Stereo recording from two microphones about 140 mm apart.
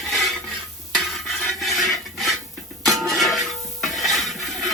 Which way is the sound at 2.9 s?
Centre (ahead or behind).